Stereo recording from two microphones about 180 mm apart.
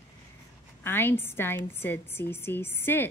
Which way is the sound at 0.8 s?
10° left (ahead or behind).